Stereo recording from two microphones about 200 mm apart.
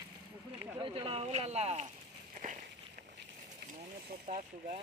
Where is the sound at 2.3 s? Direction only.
40° right (ahead or behind).